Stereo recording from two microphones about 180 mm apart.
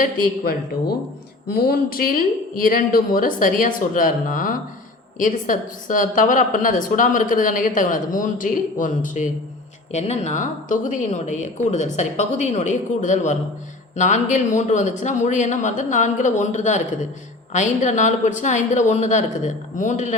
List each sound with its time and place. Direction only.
0.0 s a woman's voice: 55° left (ahead or behind)